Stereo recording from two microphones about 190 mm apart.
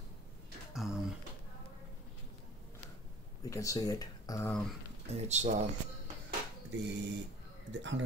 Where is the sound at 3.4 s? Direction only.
15° left (ahead or behind).